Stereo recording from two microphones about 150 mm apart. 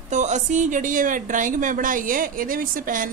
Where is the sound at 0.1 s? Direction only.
55° right (ahead or behind).